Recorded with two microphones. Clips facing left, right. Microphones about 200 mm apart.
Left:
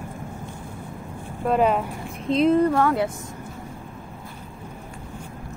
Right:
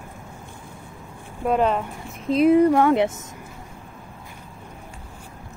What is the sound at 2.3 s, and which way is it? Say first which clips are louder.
Speech: right 3 dB; 10° right (ahead or behind).